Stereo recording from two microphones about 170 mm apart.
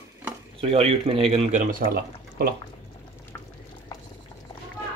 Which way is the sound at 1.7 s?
60° right (ahead or behind).